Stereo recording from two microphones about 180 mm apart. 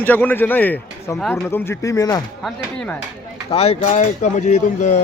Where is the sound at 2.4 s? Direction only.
5° left (ahead or behind).